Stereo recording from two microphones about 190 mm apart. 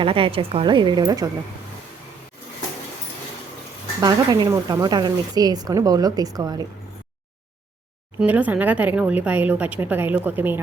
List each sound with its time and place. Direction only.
0.0 s speech: 30° right (ahead or behind)
4.0 s speech: 20° right (ahead or behind)
8.2 s a woman's voice: 10° right (ahead or behind)